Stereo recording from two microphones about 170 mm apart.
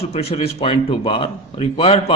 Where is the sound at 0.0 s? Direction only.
35° left (ahead or behind).